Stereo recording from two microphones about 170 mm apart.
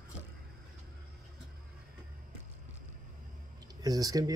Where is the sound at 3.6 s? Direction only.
20° right (ahead or behind).